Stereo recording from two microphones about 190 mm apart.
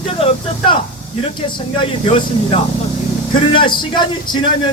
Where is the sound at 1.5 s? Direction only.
25° left (ahead or behind).